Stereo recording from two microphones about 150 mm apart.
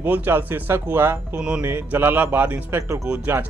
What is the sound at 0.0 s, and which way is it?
Speech, 10° right (ahead or behind).